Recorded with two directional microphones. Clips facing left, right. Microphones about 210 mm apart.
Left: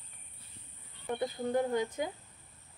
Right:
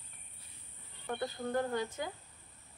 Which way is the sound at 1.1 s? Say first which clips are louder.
Left 3 dB; 15° left (ahead or behind).